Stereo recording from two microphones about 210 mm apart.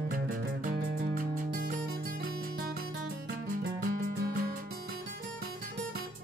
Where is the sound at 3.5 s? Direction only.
40° right (ahead or behind).